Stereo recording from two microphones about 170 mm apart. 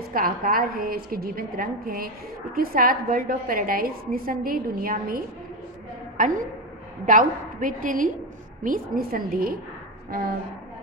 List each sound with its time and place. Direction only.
0.1 s a woman's voice: 55° right (ahead or behind)